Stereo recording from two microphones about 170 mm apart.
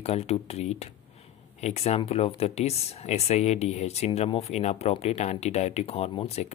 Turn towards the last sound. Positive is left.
turn(degrees=35)  # may be behind; listen again after turning